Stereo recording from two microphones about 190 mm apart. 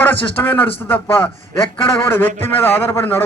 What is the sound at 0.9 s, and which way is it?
Speech, 10° left (ahead or behind).